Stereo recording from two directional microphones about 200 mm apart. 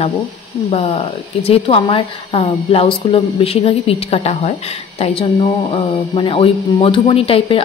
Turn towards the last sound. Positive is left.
turn(degrees=25)  # may be behind; listen again after turning